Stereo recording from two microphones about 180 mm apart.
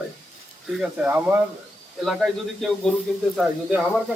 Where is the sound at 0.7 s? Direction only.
5° right (ahead or behind).